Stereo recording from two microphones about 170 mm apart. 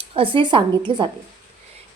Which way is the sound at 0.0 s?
30° right (ahead or behind).